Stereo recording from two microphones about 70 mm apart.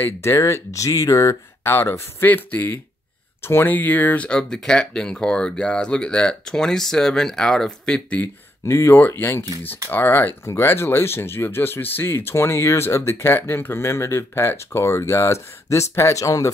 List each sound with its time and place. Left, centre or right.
0.0 s speech: left
1.6 s speech: left
4.3 s speech: centre
8.6 s speech: left
8.9 s speech: left